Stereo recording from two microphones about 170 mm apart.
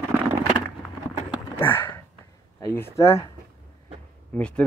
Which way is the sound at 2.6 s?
15° left (ahead or behind).